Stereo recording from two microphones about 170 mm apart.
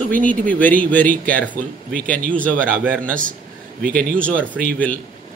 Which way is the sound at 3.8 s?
55° right (ahead or behind).